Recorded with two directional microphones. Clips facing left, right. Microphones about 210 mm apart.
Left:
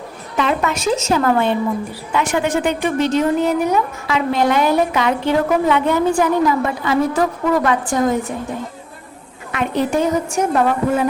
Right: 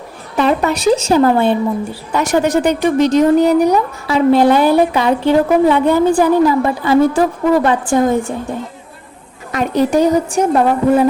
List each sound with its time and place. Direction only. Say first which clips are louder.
0.3 s a woman's voice: right 5 dB; 35° right (ahead or behind)
9.5 s a woman's voice: right 4 dB; 40° right (ahead or behind)